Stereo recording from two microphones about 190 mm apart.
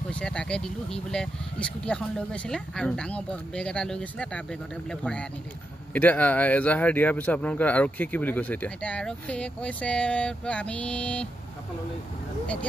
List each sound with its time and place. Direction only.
0.1 s speech: 5° left (ahead or behind)